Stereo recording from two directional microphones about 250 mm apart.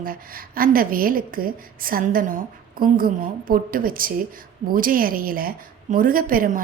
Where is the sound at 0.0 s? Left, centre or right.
Right.